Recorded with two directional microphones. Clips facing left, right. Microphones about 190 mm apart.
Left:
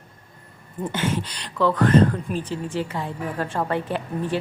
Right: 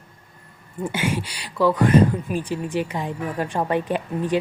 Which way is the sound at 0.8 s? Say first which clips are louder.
Even; 10° right (ahead or behind).